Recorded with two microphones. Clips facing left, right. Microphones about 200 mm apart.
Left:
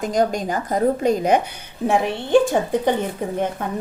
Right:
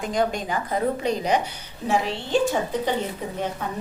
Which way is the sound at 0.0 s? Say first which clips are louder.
Left 4 dB; 45° left (ahead or behind).